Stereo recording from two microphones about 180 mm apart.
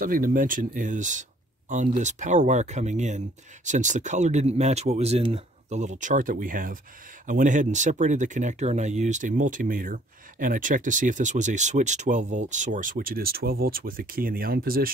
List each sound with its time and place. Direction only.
0.0 s speech: 50° right (ahead or behind)